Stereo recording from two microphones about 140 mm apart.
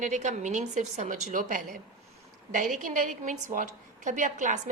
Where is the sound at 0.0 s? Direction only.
60° right (ahead or behind).